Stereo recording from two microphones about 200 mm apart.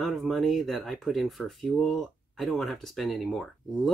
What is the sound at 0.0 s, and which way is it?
Speech, centre (ahead or behind).